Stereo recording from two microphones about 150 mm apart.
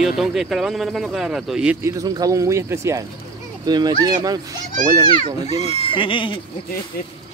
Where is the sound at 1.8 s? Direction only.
25° right (ahead or behind).